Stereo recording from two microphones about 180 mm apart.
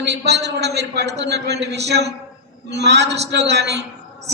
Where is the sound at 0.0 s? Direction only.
70° right (ahead or behind).